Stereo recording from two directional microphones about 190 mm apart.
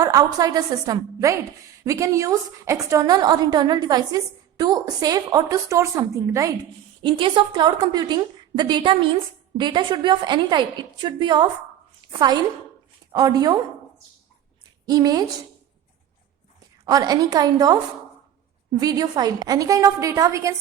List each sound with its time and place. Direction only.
0.0 s a woman's voice: 20° right (ahead or behind)
14.8 s a woman's voice: 20° right (ahead or behind)
16.8 s a woman's voice: 20° right (ahead or behind)